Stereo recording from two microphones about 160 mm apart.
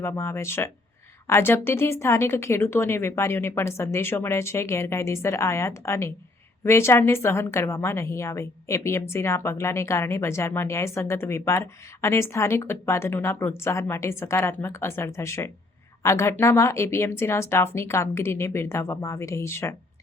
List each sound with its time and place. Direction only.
0.0 s a woman's voice: 15° left (ahead or behind)